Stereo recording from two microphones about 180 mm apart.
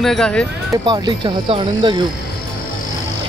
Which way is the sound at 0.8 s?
25° right (ahead or behind).